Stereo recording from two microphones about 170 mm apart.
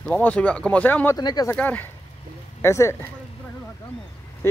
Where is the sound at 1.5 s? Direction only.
10° left (ahead or behind).